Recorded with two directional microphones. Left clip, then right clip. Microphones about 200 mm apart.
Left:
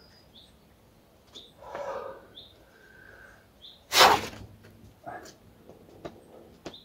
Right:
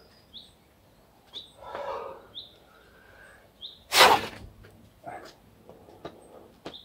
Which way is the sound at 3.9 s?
Centre (ahead or behind).